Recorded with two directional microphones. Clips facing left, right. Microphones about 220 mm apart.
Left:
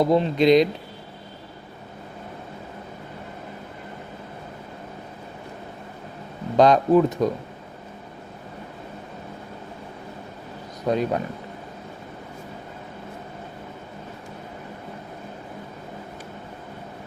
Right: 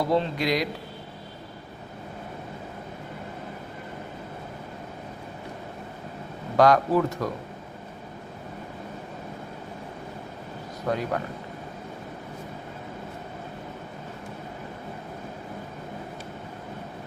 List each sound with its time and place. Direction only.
0.0 s speech: 20° left (ahead or behind)
6.6 s speech: 20° left (ahead or behind)
10.8 s speech: 20° left (ahead or behind)